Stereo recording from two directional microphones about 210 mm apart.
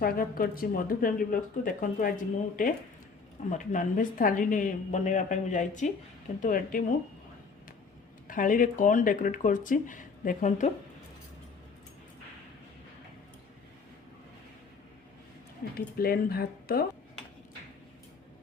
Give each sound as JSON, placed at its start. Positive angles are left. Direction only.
{"t": 0.0, "sound": "speech", "side_deg": 45}
{"t": 8.3, "sound": "speech", "side_deg": 40}
{"t": 15.6, "sound": "speech", "side_deg": 45}